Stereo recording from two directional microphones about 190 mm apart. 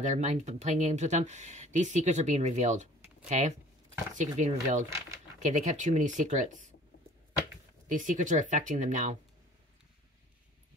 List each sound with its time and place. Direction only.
0.0 s speech: 40° right (ahead or behind)
7.9 s speech: 40° right (ahead or behind)